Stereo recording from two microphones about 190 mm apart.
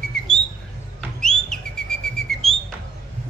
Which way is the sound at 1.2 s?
5° left (ahead or behind).